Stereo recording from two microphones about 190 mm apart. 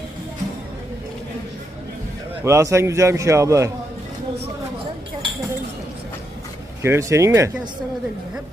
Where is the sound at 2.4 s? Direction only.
15° right (ahead or behind).